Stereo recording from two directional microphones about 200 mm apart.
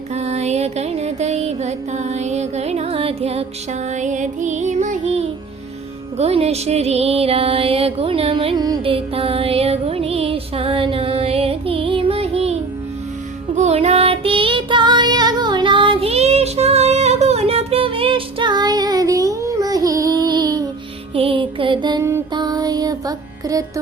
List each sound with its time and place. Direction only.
0.1 s music: 35° right (ahead or behind)
13.6 s music: 30° right (ahead or behind)